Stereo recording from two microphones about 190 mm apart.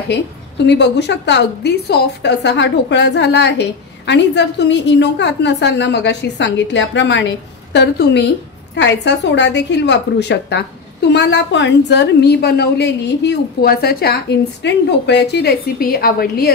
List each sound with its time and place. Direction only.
0.7 s a woman's voice: 65° left (ahead or behind)